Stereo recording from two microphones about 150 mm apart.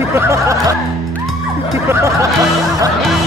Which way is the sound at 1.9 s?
20° right (ahead or behind).